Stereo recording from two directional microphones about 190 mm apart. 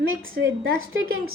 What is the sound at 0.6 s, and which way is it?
Speech, 90° right.